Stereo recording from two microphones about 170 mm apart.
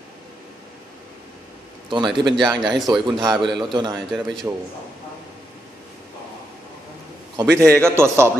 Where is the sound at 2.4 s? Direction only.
Centre (ahead or behind).